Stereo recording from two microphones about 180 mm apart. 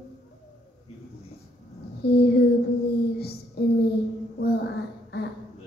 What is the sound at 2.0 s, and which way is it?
Speech, 65° left (ahead or behind).